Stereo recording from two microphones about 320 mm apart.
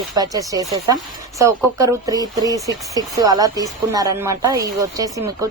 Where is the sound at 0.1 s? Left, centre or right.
Centre.